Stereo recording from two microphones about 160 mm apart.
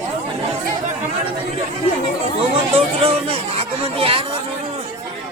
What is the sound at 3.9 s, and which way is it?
Chatter, 35° right (ahead or behind).